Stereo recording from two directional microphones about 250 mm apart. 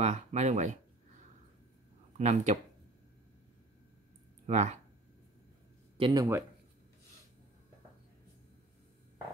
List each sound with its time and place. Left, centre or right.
0.0 s speech: right
2.1 s speech: right
4.5 s speech: right
5.9 s speech: centre